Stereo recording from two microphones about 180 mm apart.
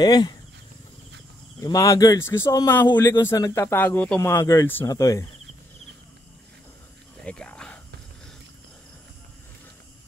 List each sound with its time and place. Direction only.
0.0 s speech: 25° left (ahead or behind)
1.6 s speech: 20° left (ahead or behind)
7.2 s whispering: 5° left (ahead or behind)